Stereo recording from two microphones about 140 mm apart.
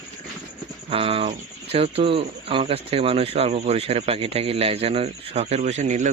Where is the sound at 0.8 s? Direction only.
40° right (ahead or behind).